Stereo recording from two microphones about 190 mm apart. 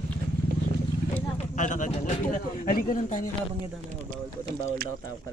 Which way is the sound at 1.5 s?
40° left (ahead or behind).